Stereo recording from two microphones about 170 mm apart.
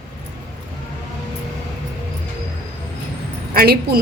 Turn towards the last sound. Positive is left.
turn(degrees=-60)  # may be behind; listen again after turning